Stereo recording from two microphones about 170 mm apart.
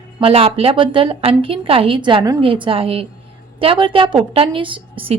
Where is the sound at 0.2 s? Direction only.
35° right (ahead or behind).